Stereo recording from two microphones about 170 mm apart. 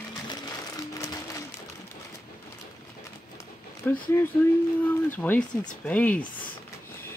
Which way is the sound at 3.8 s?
10° left (ahead or behind).